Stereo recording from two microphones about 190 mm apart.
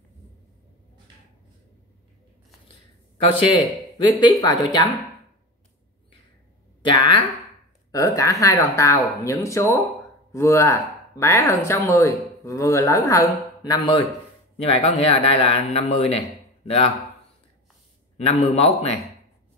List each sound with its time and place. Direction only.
4.2 s speech: 20° left (ahead or behind)
6.8 s a man's voice: 25° left (ahead or behind)
18.1 s a man's voice: 35° left (ahead or behind)